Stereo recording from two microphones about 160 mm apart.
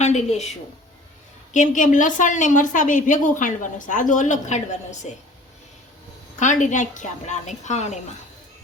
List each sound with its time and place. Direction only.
0.0 s a woman's voice: 45° left (ahead or behind)
1.5 s a woman's voice: 50° left (ahead or behind)
6.4 s a woman's voice: 50° left (ahead or behind)